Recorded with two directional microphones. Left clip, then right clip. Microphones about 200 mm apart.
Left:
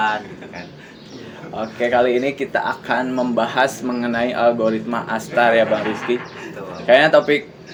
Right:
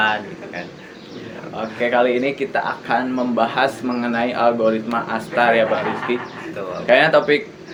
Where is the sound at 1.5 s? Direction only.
45° left (ahead or behind).